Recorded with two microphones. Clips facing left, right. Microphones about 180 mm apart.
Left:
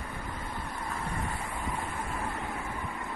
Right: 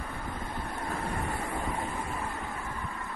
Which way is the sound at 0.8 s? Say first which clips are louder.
Right 2 dB; 65° right (ahead or behind).